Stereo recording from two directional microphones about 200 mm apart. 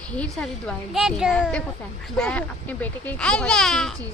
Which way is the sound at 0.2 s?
5° left (ahead or behind).